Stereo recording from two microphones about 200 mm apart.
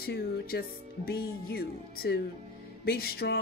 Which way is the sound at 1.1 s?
50° left (ahead or behind).